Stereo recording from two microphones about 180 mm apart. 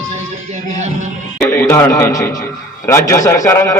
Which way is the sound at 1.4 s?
15° left (ahead or behind).